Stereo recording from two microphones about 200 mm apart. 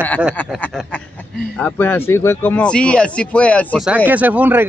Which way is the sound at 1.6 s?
10° left (ahead or behind).